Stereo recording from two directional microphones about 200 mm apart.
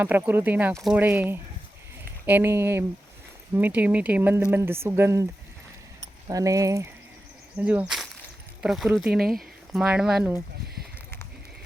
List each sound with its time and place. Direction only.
0.0 s speech: 10° right (ahead or behind)